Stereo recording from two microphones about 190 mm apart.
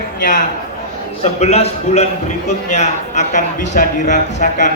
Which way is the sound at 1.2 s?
35° left (ahead or behind).